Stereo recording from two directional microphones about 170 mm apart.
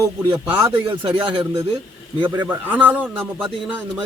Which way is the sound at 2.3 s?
10° right (ahead or behind).